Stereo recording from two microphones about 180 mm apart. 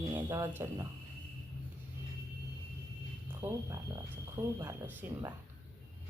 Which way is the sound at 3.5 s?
20° right (ahead or behind).